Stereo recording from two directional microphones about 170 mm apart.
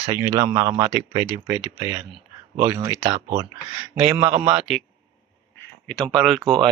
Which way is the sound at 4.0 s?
15° right (ahead or behind).